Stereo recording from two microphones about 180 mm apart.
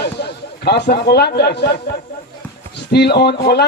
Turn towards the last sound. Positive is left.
turn(degrees=60)  # may be behind; listen again after turning